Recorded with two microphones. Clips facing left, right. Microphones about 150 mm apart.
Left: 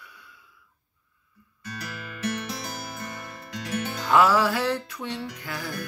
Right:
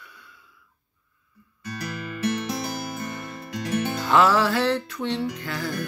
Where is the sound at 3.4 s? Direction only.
15° right (ahead or behind).